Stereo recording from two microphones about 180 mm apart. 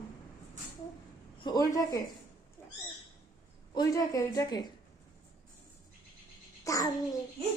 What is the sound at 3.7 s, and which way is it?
Speech, 20° left (ahead or behind).